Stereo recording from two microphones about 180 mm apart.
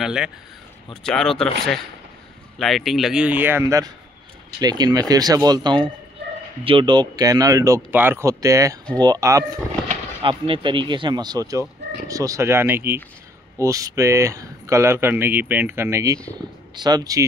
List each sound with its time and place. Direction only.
0.0 s speech: 5° right (ahead or behind); by 17.3 s 20° right (ahead or behind)